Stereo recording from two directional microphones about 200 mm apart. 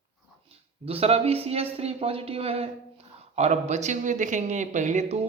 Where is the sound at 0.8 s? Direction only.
30° right (ahead or behind).